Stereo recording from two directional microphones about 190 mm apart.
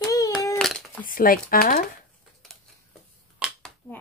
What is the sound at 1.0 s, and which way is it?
Speech, 50° left (ahead or behind).